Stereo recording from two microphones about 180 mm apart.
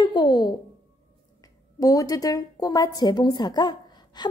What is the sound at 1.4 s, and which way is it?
A woman's voice, 20° left (ahead or behind).